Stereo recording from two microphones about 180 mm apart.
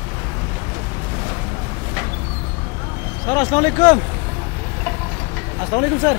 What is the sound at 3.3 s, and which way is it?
Speech, 20° left (ahead or behind).